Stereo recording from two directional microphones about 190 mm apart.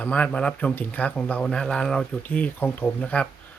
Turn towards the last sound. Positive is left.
turn(degrees=5)  # may be behind; listen again after turning